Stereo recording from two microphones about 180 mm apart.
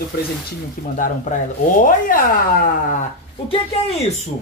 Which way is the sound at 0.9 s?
45° left (ahead or behind).